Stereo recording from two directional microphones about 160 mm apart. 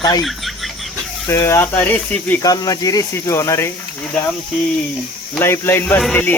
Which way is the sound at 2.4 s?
25° left (ahead or behind).